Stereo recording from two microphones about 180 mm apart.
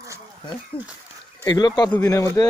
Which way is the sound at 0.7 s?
30° left (ahead or behind).